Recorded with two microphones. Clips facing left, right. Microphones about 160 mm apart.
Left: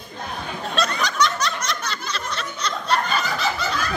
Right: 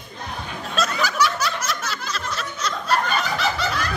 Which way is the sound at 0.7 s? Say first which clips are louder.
Right 1 dB; 5° right (ahead or behind).